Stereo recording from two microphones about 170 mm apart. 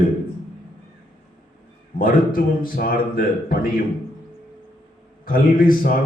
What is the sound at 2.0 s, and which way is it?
A man's voice, 55° left (ahead or behind).